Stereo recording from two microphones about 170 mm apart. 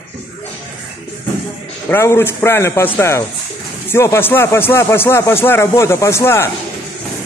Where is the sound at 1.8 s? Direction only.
15° left (ahead or behind).